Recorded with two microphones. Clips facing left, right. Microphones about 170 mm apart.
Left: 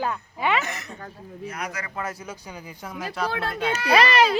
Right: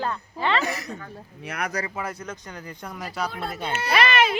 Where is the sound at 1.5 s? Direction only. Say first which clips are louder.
Right 3 dB; 65° right (ahead or behind).